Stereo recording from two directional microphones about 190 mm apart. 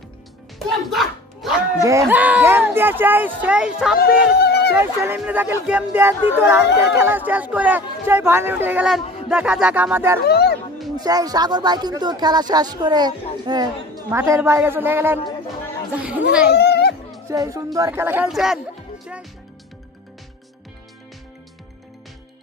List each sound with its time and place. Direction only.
0.7 s speech: centre (ahead or behind)
1.8 s speech: 15° right (ahead or behind)
4.0 s a sound: 55° left (ahead or behind)
4.7 s speech: 10° right (ahead or behind)
10.2 s speech: 55° left (ahead or behind)
11.0 s speech: 20° right (ahead or behind)
16.5 s music: 60° left (ahead or behind)
17.3 s speech: 15° right (ahead or behind)